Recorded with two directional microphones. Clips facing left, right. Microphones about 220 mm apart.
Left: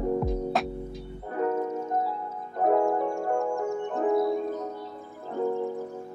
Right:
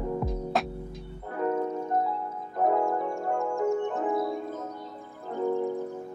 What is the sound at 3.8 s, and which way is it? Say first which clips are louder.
Music: left 4 dB; 15° left (ahead or behind).